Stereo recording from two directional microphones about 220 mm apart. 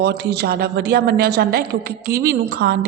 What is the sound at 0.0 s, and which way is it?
A woman's voice, 50° right (ahead or behind).